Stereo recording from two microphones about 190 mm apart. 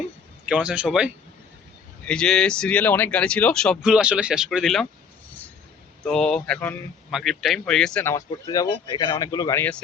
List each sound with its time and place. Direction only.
0.4 s speech: 5° right (ahead or behind)
6.1 s speech: 5° left (ahead or behind)
8.1 s speech: 20° left (ahead or behind)